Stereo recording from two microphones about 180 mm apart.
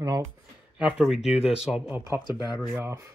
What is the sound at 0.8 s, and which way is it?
Speech, 5° right (ahead or behind).